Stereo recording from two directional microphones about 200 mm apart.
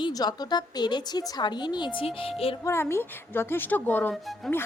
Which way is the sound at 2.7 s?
10° left (ahead or behind).